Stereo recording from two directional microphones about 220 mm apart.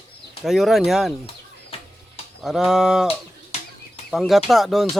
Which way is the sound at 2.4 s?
Centre (ahead or behind).